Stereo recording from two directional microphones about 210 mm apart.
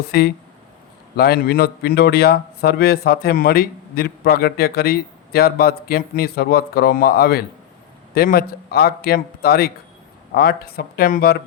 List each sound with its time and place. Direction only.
0.1 s speech: 50° left (ahead or behind)